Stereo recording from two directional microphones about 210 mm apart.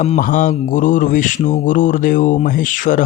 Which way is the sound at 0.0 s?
35° left (ahead or behind).